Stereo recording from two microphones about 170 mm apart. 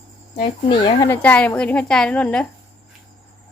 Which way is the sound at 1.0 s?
10° left (ahead or behind).